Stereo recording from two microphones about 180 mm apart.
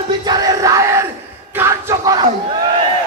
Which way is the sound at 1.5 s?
15° right (ahead or behind).